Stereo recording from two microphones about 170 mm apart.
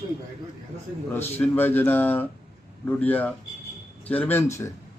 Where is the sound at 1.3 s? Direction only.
10° left (ahead or behind).